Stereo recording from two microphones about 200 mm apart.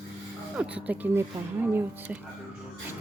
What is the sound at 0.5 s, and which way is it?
Speech, 5° right (ahead or behind).